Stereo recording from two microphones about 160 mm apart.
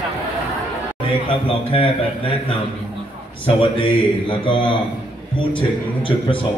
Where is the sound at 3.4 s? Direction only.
30° left (ahead or behind).